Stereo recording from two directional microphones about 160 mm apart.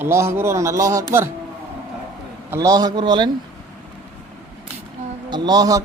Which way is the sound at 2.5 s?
20° right (ahead or behind).